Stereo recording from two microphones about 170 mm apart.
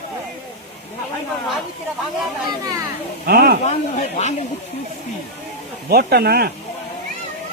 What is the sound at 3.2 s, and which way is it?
Speech, 65° right (ahead or behind).